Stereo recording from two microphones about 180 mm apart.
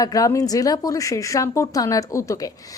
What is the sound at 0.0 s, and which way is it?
Speech, 20° left (ahead or behind).